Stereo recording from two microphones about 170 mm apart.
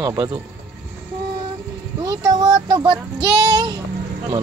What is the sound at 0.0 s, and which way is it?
Speech, 20° right (ahead or behind).